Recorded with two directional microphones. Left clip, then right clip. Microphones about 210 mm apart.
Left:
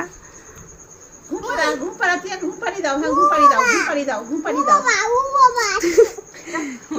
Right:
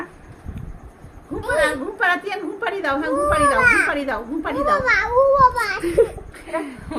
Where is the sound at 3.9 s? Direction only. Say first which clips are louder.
Left 1 dB; 30° right (ahead or behind).